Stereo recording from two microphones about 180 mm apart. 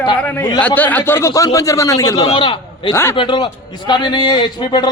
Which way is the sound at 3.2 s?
25° left (ahead or behind).